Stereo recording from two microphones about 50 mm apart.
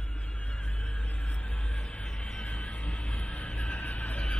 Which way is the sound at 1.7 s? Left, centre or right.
Left.